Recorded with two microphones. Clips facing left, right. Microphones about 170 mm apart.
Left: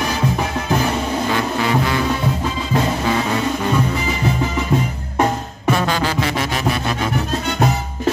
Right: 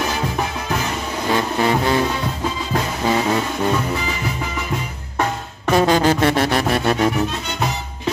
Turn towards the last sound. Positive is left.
turn(degrees=-55)  # may be behind; listen again after turning